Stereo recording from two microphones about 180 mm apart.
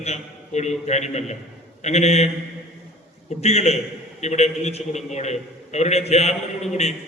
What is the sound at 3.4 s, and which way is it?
A man's voice, 35° left (ahead or behind).